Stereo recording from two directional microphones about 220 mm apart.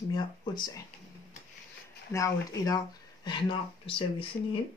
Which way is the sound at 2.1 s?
15° left (ahead or behind).